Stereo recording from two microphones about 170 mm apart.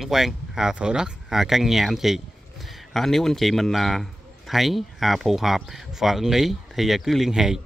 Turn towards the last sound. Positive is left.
turn(degrees=-5)  # may be behind; listen again after turning